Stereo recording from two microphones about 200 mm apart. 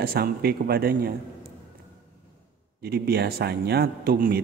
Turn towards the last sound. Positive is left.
turn(degrees=-50)  # may be behind; listen again after turning